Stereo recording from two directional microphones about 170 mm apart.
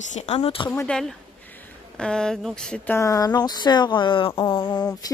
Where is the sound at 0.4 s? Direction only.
30° left (ahead or behind).